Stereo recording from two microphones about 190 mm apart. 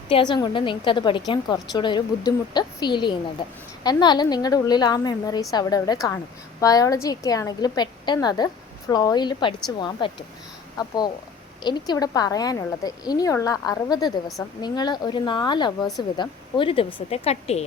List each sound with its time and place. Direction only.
0.1 s a woman's voice: 25° left (ahead or behind)